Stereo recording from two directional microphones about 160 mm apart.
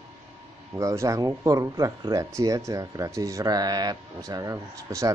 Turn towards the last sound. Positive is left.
turn(degrees=-20)  # may be behind; listen again after turning